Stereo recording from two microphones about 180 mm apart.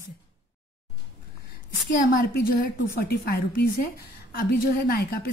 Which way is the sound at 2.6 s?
60° left (ahead or behind).